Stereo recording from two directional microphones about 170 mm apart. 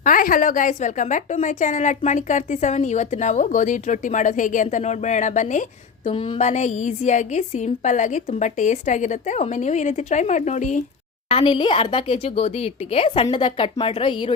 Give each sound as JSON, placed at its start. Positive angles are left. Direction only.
{"t": 0.0, "sound": "a woman's voice", "side_deg": 55}
{"t": 6.1, "sound": "a woman's voice", "side_deg": 30}
{"t": 11.3, "sound": "a woman's voice", "side_deg": 35}